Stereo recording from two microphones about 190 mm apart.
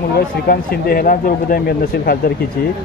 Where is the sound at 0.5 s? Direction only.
50° left (ahead or behind).